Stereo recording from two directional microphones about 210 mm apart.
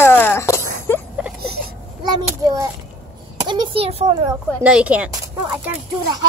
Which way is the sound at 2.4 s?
15° right (ahead or behind).